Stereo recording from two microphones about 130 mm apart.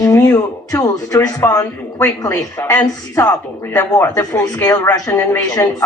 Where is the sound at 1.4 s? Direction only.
20° left (ahead or behind).